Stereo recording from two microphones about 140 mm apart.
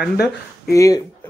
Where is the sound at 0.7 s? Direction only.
25° left (ahead or behind).